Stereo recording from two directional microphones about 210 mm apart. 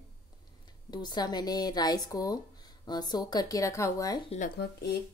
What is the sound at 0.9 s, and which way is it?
A woman's voice, 20° left (ahead or behind).